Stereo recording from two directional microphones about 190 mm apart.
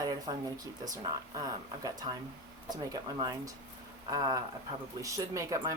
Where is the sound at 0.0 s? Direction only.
20° right (ahead or behind).